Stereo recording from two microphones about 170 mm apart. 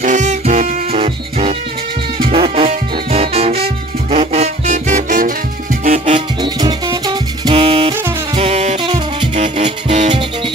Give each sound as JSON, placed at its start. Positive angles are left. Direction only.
{"t": 0.0, "sound": "music", "side_deg": -45}
{"t": 6.1, "sound": "music", "side_deg": -25}
{"t": 9.3, "sound": "music", "side_deg": -40}